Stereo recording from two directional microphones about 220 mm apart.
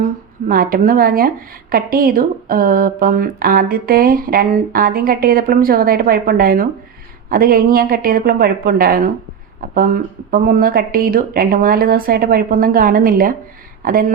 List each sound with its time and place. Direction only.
0.4 s a woman's voice: 40° right (ahead or behind)